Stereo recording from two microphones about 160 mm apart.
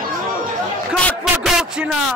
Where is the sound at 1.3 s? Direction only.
Centre (ahead or behind).